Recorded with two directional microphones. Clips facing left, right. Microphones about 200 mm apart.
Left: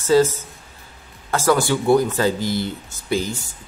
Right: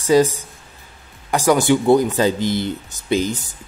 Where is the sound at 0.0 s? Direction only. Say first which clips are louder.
Right 1 dB; 15° right (ahead or behind).